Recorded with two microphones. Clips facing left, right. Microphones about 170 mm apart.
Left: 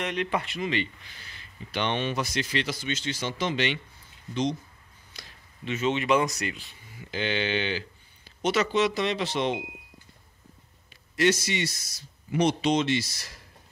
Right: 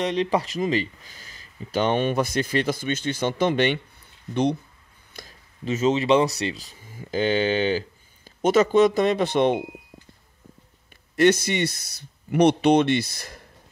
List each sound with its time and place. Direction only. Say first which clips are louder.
0.0 s speech: right 6 dB; 30° right (ahead or behind); by 4.6 s 60° right (ahead or behind)
5.1 s speech: right 6 dB; 45° right (ahead or behind)
11.1 s speech: right 6 dB; 55° right (ahead or behind)